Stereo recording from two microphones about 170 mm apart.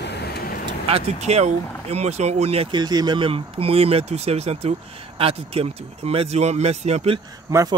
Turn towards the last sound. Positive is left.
turn(degrees=-15)  # may be behind; listen again after turning